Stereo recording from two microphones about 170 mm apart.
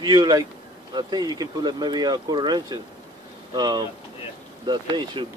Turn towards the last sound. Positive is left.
turn(degrees=-30)  # may be behind; listen again after turning